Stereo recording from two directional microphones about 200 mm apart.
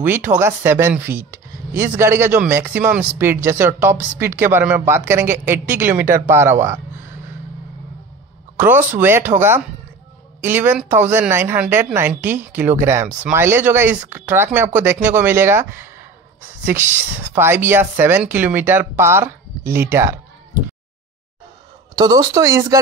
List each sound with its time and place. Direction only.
0.0 s a woman's voice: 10° right (ahead or behind)
8.5 s a woman's voice: 10° right (ahead or behind)
21.9 s a woman's voice: 20° right (ahead or behind)